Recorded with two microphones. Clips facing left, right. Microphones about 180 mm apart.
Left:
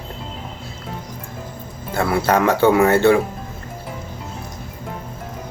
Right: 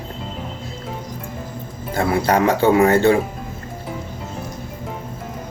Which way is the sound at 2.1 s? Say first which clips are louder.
Even; 15° right (ahead or behind).